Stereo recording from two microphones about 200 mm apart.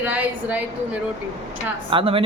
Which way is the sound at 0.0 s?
5° right (ahead or behind).